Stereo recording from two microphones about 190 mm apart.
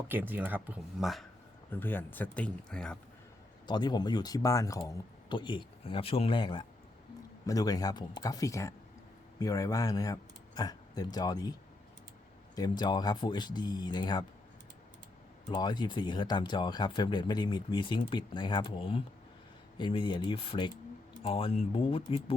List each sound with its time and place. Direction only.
0.1 s speech: 10° right (ahead or behind)
1.7 s speech: 10° left (ahead or behind)
3.7 s speech: 20° left (ahead or behind)
12.5 s speech: 20° left (ahead or behind)
15.4 s speech: 25° left (ahead or behind)